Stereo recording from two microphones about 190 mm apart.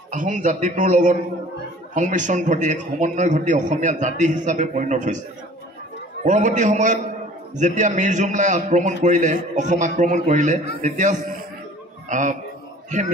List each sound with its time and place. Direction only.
0.1 s a man's voice: 40° right (ahead or behind)
6.2 s a man's voice: 40° right (ahead or behind)